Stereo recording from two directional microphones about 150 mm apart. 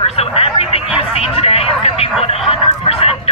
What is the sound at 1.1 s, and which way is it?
Vehicle, 40° left (ahead or behind).